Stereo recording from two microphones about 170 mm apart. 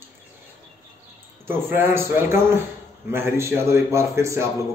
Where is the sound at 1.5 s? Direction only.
15° right (ahead or behind).